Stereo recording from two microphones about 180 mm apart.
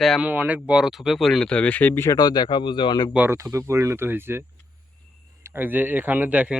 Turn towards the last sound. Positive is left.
turn(degrees=-10)  # may be behind; listen again after turning